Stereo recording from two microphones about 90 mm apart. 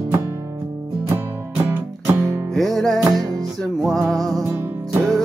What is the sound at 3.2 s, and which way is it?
Music, 45° right (ahead or behind).